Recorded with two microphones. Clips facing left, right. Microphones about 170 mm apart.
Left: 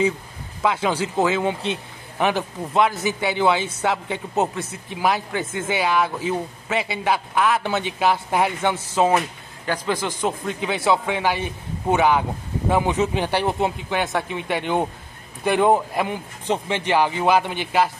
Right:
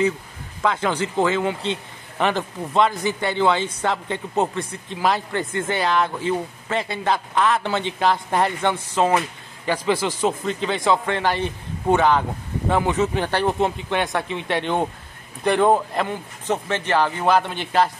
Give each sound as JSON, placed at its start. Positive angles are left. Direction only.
{"t": 0.6, "sound": "a man's voice", "side_deg": 10}
{"t": 9.7, "sound": "speech", "side_deg": -5}
{"t": 10.2, "sound": "a man's voice", "side_deg": 10}
{"t": 13.9, "sound": "a man's voice", "side_deg": 5}